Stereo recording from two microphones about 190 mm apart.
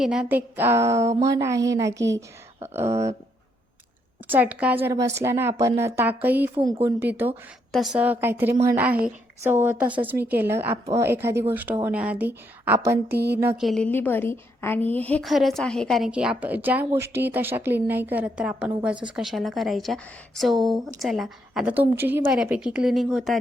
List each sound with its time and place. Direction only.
0.0 s a woman's voice: 5° right (ahead or behind)
4.3 s a woman's voice: 10° right (ahead or behind)
7.7 s a woman's voice: centre (ahead or behind)
13.1 s a sound: 60° right (ahead or behind)
13.6 s a woman's voice: centre (ahead or behind)